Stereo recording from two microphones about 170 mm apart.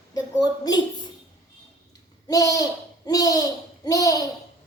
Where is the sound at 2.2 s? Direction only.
20° left (ahead or behind).